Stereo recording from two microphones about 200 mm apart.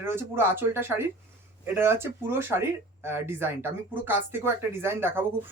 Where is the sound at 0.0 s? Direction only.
10° right (ahead or behind).